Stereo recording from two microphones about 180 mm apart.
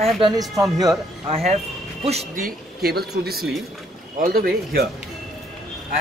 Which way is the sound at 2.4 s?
60° right (ahead or behind).